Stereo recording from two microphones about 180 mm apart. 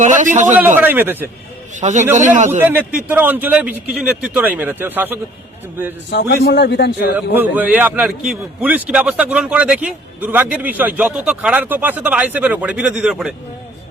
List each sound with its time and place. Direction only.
0.0 s a man's voice: 45° right (ahead or behind)
0.8 s a man's voice: 10° right (ahead or behind)
1.7 s a man's voice: 40° right (ahead or behind)
2.6 s a man's voice: 10° right (ahead or behind)
6.1 s a man's voice: 70° left (ahead or behind)
7.3 s a man's voice: 10° right (ahead or behind)